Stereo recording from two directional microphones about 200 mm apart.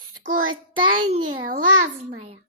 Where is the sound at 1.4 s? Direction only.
40° right (ahead or behind).